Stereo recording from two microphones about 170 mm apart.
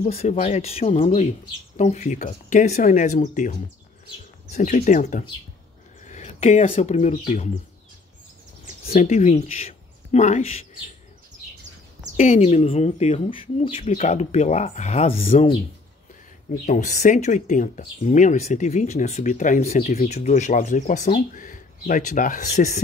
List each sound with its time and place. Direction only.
0.0 s speech: 40° left (ahead or behind)
8.8 s speech: 40° left (ahead or behind)
12.2 s speech: 40° left (ahead or behind)
16.4 s speech: 50° left (ahead or behind)